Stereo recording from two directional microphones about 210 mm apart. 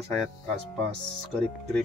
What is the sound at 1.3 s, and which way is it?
Speech, 5° left (ahead or behind).